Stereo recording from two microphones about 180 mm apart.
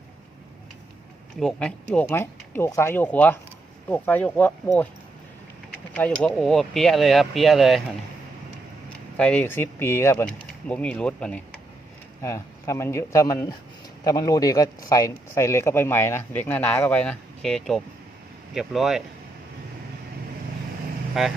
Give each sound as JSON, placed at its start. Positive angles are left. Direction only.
{"t": 1.4, "sound": "speech", "side_deg": 5}
{"t": 6.0, "sound": "speech", "side_deg": 5}
{"t": 9.1, "sound": "speech", "side_deg": 5}
{"t": 21.2, "sound": "speech", "side_deg": 0}